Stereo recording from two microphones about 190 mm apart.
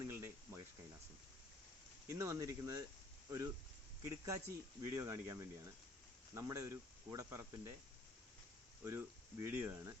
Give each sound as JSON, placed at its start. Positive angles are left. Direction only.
{"t": 0.0, "sound": "a sound", "side_deg": -15}
{"t": 2.0, "sound": "speech", "side_deg": -15}
{"t": 8.8, "sound": "speech", "side_deg": -15}